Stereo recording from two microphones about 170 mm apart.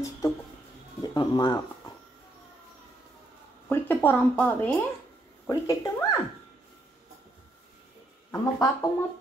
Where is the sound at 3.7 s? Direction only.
10° left (ahead or behind).